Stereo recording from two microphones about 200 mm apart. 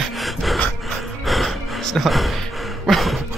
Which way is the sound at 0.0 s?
Centre (ahead or behind).